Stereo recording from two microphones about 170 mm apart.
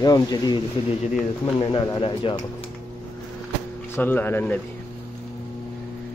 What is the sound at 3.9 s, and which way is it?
Speech, 10° left (ahead or behind).